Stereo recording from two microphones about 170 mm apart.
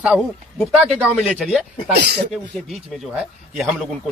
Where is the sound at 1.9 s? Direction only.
75° right (ahead or behind).